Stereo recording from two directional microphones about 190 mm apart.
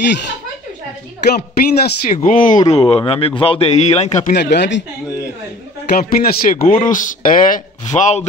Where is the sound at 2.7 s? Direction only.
30° left (ahead or behind).